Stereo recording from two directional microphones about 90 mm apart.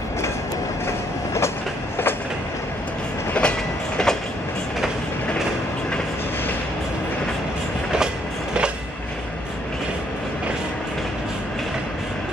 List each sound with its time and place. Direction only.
3.3 s train: 10° left (ahead or behind)